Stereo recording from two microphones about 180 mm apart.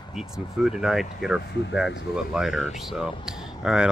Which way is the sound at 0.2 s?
Centre (ahead or behind).